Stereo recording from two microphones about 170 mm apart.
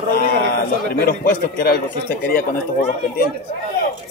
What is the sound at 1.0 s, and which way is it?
Speech, 60° left (ahead or behind).